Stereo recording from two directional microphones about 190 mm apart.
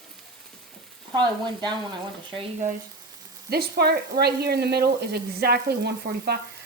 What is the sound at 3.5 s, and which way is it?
Speech, 55° right (ahead or behind).